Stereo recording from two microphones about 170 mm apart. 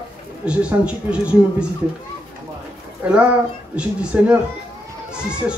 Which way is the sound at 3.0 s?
5° right (ahead or behind).